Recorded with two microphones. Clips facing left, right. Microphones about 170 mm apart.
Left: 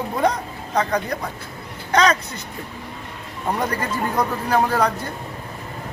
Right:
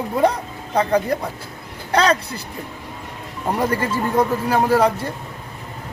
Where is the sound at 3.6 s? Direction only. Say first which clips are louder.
Right 5 dB; 30° right (ahead or behind).